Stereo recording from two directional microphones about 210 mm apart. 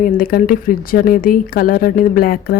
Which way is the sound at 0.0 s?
45° left (ahead or behind).